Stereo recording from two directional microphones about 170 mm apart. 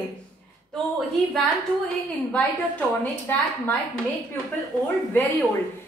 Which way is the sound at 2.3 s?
10° left (ahead or behind).